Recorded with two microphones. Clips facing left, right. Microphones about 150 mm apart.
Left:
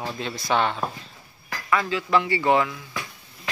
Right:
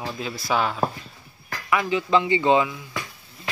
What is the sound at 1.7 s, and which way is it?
Speech, 15° right (ahead or behind).